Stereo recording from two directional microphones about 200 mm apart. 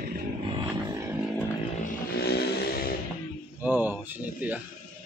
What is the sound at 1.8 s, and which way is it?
Vehicle, 55° left (ahead or behind).